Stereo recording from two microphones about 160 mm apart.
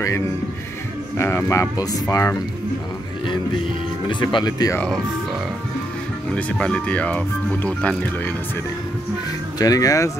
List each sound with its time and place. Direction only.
1.1 s speech: 15° left (ahead or behind)
4.1 s speech: 30° left (ahead or behind)
6.3 s speech: 5° left (ahead or behind)
9.6 s speech: 20° left (ahead or behind)